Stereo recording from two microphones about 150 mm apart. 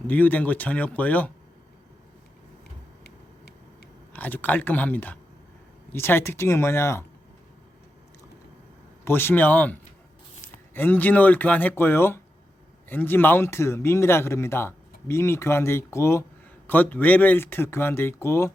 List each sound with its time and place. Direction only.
0.1 s speech: 10° left (ahead or behind)
4.1 s speech: 10° left (ahead or behind)
9.0 s speech: 15° left (ahead or behind)
10.8 s speech: 10° left (ahead or behind)